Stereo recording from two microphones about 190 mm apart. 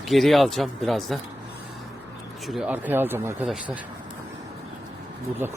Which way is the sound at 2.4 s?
5° right (ahead or behind).